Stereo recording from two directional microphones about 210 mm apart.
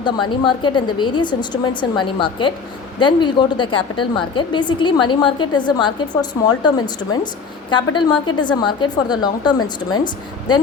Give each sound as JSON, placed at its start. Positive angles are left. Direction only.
{"t": 0.0, "sound": "a woman's voice", "side_deg": 20}